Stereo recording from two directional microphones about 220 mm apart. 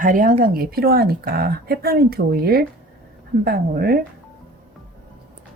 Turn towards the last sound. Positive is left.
turn(degrees=-45)  # may be behind; listen again after turning